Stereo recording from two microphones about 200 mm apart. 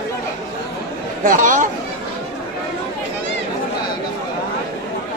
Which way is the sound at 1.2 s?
40° right (ahead or behind).